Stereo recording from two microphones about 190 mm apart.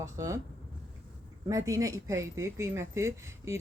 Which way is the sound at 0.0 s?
15° right (ahead or behind).